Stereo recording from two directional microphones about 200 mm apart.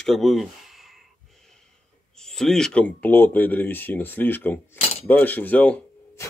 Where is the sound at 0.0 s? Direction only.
Centre (ahead or behind).